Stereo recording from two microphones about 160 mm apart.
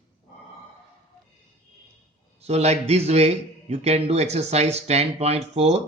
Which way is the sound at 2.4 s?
40° right (ahead or behind).